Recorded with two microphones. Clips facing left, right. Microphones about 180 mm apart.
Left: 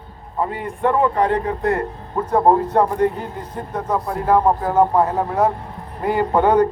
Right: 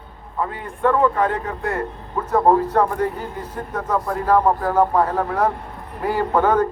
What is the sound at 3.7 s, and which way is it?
A man's voice, 10° left (ahead or behind).